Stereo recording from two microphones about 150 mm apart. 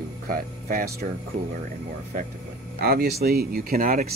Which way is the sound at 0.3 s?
70° right (ahead or behind).